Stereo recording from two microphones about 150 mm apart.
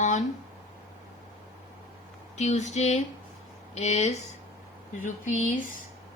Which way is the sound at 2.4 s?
50° left (ahead or behind).